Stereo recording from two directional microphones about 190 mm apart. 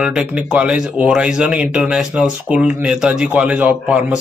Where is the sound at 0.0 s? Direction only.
5° right (ahead or behind).